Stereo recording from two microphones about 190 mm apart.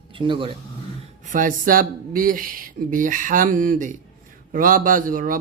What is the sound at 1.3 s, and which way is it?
A man's voice, 45° right (ahead or behind).